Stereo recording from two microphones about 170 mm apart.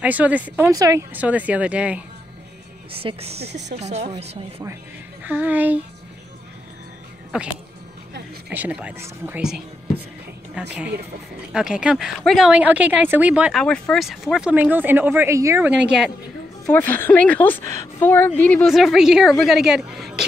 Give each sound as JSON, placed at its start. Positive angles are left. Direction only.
{"t": 0.0, "sound": "speech", "side_deg": -10}
{"t": 0.7, "sound": "a woman's voice", "side_deg": -20}
{"t": 1.1, "sound": "speech", "side_deg": -10}
{"t": 2.9, "sound": "speech", "side_deg": -35}
{"t": 3.4, "sound": "speech", "side_deg": -90}
{"t": 3.7, "sound": "speech", "side_deg": -40}
{"t": 5.2, "sound": "speech", "side_deg": -10}
{"t": 7.3, "sound": "a woman's voice", "side_deg": -5}
{"t": 8.5, "sound": "speech", "side_deg": -10}
{"t": 10.7, "sound": "a woman's voice", "side_deg": -5}
{"t": 16.6, "sound": "a woman's voice", "side_deg": 10}